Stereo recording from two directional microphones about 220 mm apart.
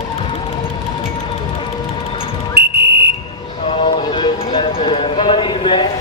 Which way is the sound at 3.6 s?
25° left (ahead or behind).